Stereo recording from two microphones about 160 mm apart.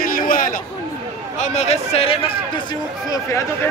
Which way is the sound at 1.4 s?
45° left (ahead or behind).